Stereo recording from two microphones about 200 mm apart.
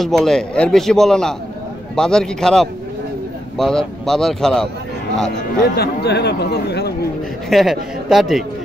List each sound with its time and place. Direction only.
0.0 s speech: centre (ahead or behind)
5.6 s speech: 55° left (ahead or behind)
7.4 s speech: centre (ahead or behind)